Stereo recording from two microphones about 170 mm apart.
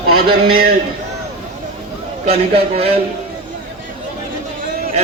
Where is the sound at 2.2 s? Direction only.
35° right (ahead or behind).